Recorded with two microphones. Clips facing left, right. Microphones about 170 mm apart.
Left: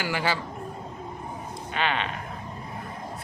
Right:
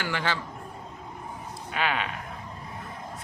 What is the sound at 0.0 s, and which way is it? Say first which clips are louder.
Speech: left 2 dB; 10° left (ahead or behind).